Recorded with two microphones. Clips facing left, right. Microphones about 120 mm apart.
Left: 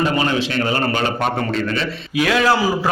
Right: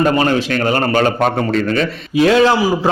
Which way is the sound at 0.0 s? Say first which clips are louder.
Right 4 dB; 45° right (ahead or behind).